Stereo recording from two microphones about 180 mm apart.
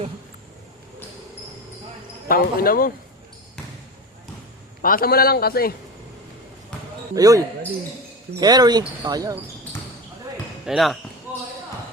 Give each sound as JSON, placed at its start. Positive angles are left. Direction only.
{"t": 2.2, "sound": "speech", "side_deg": 55}
{"t": 4.8, "sound": "a man's voice", "side_deg": 55}
{"t": 7.2, "sound": "speech", "side_deg": -20}
{"t": 10.7, "sound": "speech", "side_deg": 0}
{"t": 11.3, "sound": "basketball bounce", "side_deg": -10}